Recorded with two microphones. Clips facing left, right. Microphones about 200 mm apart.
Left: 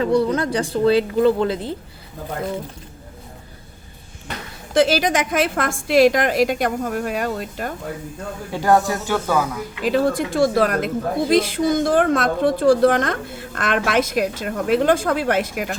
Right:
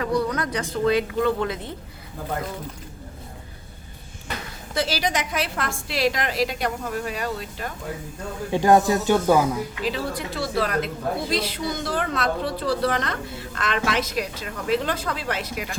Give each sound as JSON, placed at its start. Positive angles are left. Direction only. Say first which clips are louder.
{"t": 0.0, "sound": "speech", "louder": "left 6 dB", "side_deg": 25}
{"t": 4.9, "sound": "a woman's voice", "louder": "left 6 dB", "side_deg": 50}
{"t": 8.5, "sound": "speech", "louder": "right 1 dB", "side_deg": -20}
{"t": 9.8, "sound": "a woman's voice", "louder": "left 12 dB", "side_deg": 50}